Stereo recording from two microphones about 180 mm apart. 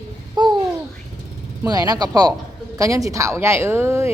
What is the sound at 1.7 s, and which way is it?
A woman's voice, 20° right (ahead or behind).